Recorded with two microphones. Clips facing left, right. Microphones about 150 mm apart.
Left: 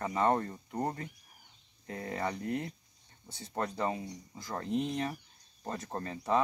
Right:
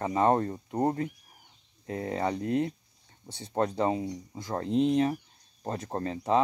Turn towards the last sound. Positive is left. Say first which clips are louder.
# right 5 dB
turn(degrees=-25)  # may be behind; listen again after turning